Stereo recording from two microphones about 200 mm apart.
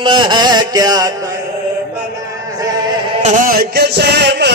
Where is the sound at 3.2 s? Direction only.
45° right (ahead or behind).